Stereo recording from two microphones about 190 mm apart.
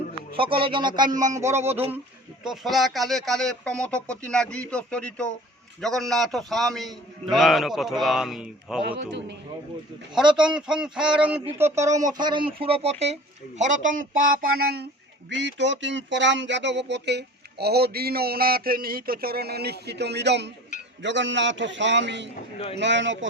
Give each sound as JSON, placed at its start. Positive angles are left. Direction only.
{"t": 0.3, "sound": "speech", "side_deg": -25}
{"t": 2.4, "sound": "a man's voice", "side_deg": 0}
{"t": 8.8, "sound": "a man's voice", "side_deg": -65}
{"t": 10.3, "sound": "a man's voice", "side_deg": -5}
{"t": 15.3, "sound": "a man's voice", "side_deg": -65}